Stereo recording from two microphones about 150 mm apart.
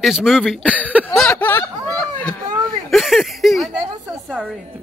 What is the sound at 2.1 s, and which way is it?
Speech, 10° left (ahead or behind).